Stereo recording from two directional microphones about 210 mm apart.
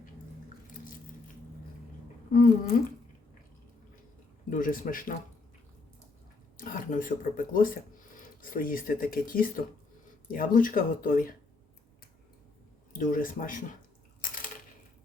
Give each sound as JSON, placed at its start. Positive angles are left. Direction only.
{"t": 2.3, "sound": "speech", "side_deg": 40}
{"t": 4.4, "sound": "speech", "side_deg": 40}
{"t": 6.6, "sound": "speech", "side_deg": 40}
{"t": 12.9, "sound": "speech", "side_deg": 40}